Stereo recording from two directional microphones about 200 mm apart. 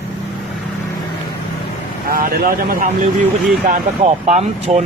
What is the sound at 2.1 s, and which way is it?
Speech, 45° right (ahead or behind).